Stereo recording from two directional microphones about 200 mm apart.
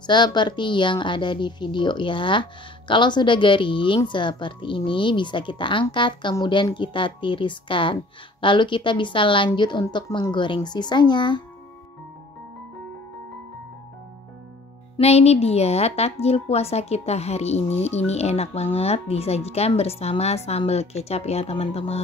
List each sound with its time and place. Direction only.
0.0 s a woman's voice: 20° left (ahead or behind)
15.0 s a woman's voice: 30° left (ahead or behind)